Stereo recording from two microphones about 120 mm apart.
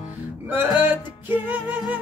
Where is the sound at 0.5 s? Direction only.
15° right (ahead or behind).